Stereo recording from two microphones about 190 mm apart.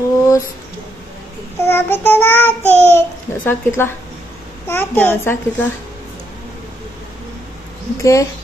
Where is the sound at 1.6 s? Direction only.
10° left (ahead or behind).